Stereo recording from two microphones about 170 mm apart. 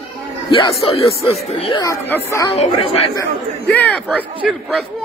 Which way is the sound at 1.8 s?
15° left (ahead or behind).